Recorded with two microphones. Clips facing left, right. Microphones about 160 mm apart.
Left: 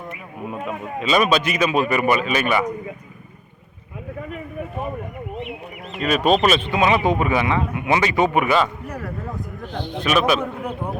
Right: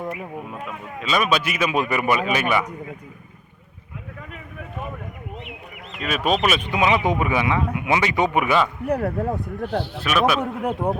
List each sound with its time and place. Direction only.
0.9 s speech: centre (ahead or behind)
6.0 s a man's voice: 5° right (ahead or behind)
8.9 s speech: 60° right (ahead or behind)
10.0 s a man's voice: 5° right (ahead or behind)